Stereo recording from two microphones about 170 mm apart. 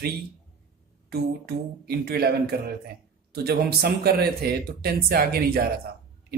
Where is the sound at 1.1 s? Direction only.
70° right (ahead or behind).